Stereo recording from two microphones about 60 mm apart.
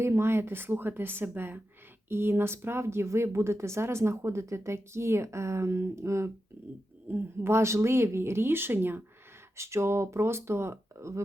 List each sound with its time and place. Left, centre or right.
0.0 s a woman's voice: right
7.1 s speech: right
9.6 s speech: right